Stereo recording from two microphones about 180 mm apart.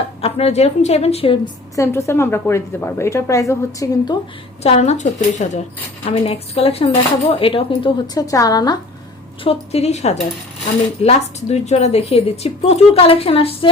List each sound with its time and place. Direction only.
0.2 s speech: 35° left (ahead or behind)
1.7 s a woman's voice: 15° left (ahead or behind)
4.6 s speech: 35° left (ahead or behind); by 8.8 s 20° left (ahead or behind)
9.4 s speech: 35° left (ahead or behind)